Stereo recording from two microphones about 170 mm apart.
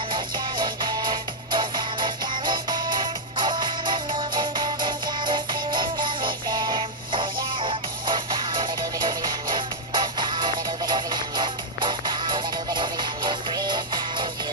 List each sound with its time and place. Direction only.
0.1 s music: 25° right (ahead or behind)